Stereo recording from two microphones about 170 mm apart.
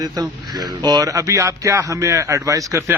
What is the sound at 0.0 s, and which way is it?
Speech, 25° right (ahead or behind).